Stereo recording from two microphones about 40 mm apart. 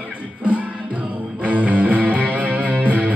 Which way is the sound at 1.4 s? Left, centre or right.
Right.